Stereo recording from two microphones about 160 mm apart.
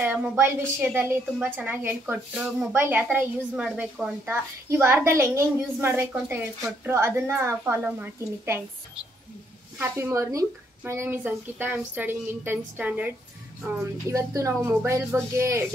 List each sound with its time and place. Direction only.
0.0 s a woman's voice: 10° right (ahead or behind)